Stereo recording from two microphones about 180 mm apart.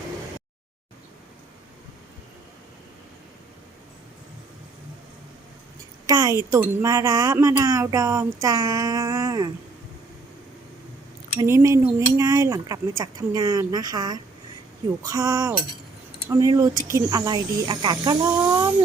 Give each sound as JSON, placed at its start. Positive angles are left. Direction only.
{"t": 6.1, "sound": "a woman's voice", "side_deg": -20}
{"t": 11.3, "sound": "a woman's voice", "side_deg": -15}